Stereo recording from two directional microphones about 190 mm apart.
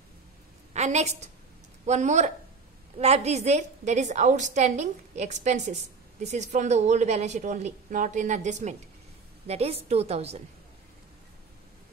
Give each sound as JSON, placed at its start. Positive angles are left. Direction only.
{"t": 0.7, "sound": "a woman's voice", "side_deg": -35}